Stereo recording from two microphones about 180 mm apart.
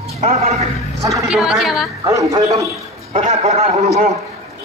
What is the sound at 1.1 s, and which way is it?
Speech, centre (ahead or behind).